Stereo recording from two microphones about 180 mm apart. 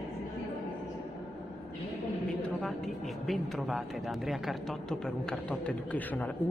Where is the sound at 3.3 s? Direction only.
Centre (ahead or behind).